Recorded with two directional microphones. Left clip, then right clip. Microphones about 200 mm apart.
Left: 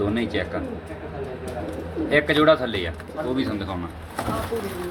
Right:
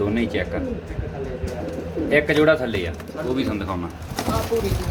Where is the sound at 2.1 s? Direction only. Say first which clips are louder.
Right 1 dB; centre (ahead or behind).